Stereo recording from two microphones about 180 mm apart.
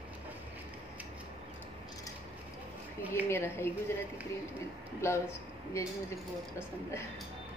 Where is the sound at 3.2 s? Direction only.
15° left (ahead or behind).